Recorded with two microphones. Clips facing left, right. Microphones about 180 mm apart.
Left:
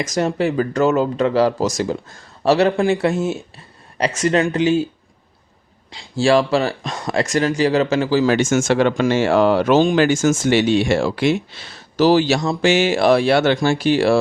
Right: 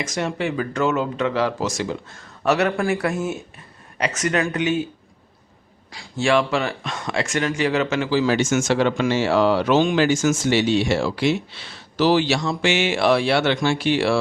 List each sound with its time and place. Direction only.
0.0 s speech: 40° left (ahead or behind)
5.9 s speech: 30° left (ahead or behind)
8.3 s speech: 50° left (ahead or behind)